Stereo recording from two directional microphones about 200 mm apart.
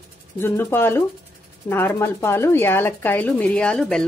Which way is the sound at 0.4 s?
10° left (ahead or behind).